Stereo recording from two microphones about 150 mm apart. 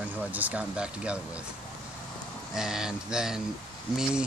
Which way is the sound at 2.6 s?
5° right (ahead or behind).